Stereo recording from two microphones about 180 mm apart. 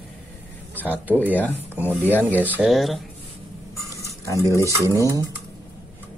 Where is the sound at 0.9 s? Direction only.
10° right (ahead or behind).